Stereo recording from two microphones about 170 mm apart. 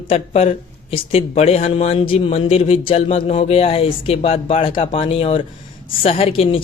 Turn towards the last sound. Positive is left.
turn(degrees=35)  # may be behind; listen again after turning